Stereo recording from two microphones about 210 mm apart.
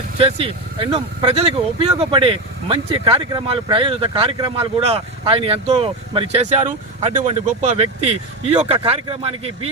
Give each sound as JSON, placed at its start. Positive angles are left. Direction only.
{"t": 0.2, "sound": "speech", "side_deg": -25}